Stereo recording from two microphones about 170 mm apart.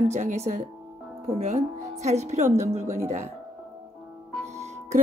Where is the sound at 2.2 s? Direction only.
40° right (ahead or behind).